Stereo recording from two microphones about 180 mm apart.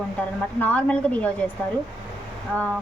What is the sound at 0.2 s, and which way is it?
A woman's voice, 10° left (ahead or behind).